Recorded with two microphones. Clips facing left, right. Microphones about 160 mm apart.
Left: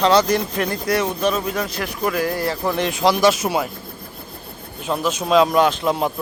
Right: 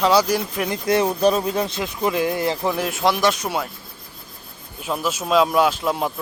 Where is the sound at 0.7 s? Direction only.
25° right (ahead or behind).